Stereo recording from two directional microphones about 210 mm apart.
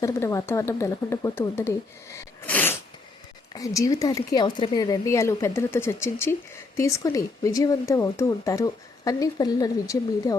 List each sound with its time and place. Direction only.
0.0 s speech: 15° left (ahead or behind)